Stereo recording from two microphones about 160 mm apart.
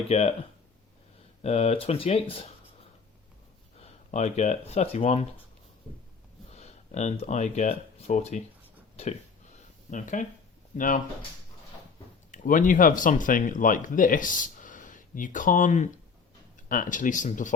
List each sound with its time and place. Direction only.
0.1 s speech: 40° left (ahead or behind)
1.4 s speech: 40° left (ahead or behind)
3.8 s speech: 40° left (ahead or behind)
6.5 s speech: 45° left (ahead or behind)
9.9 s speech: 50° left (ahead or behind)
12.3 s speech: 55° left (ahead or behind)